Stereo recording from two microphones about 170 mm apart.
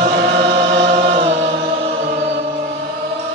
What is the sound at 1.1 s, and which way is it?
Music, 40° right (ahead or behind).